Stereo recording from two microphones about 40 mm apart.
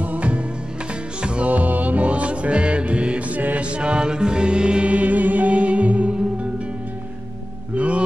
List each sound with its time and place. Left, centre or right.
0.0 s music: right
1.5 s music: right
3.6 s music: right
7.7 s music: right